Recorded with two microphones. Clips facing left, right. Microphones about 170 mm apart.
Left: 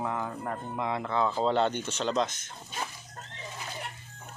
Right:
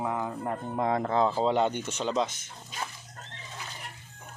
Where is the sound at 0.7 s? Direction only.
40° right (ahead or behind).